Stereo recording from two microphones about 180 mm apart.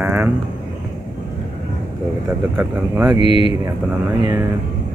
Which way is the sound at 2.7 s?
5° right (ahead or behind).